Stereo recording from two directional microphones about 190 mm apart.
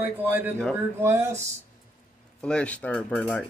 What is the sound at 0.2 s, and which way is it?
A man's voice, 10° right (ahead or behind).